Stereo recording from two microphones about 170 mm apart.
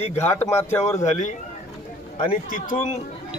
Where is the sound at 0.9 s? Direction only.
45° left (ahead or behind).